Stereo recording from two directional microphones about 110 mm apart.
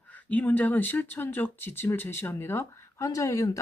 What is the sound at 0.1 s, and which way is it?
Speech, 15° left (ahead or behind).